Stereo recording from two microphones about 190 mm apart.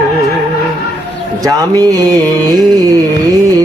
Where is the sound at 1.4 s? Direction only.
20° right (ahead or behind).